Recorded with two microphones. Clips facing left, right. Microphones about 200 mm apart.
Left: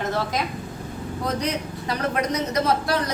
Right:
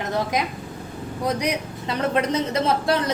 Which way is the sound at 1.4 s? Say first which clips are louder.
Right 1 dB; 15° right (ahead or behind).